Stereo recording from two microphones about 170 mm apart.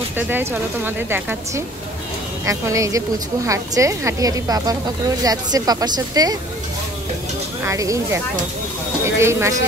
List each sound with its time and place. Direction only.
0.3 s a woman's voice: 15° right (ahead or behind)
7.6 s a woman's voice: 20° right (ahead or behind)